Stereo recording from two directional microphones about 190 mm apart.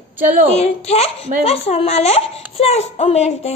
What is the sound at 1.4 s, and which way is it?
Child singing, 30° left (ahead or behind).